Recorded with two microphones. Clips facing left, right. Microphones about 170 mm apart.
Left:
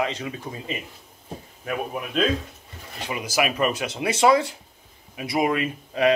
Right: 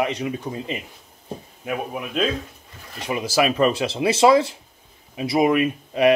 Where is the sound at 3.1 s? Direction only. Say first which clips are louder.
Right 4 dB; 30° right (ahead or behind).